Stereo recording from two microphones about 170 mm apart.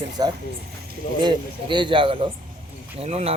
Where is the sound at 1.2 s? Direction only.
30° right (ahead or behind).